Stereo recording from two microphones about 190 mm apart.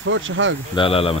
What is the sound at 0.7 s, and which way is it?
Speech, 30° left (ahead or behind).